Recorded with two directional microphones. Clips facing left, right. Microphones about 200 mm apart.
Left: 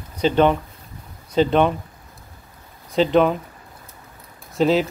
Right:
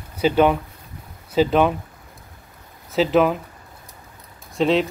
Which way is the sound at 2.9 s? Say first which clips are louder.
Left 1 dB; 5° right (ahead or behind).